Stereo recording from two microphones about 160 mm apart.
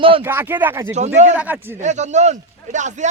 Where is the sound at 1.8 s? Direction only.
45° right (ahead or behind).